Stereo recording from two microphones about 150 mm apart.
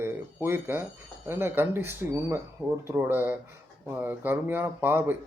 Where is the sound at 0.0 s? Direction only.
15° right (ahead or behind).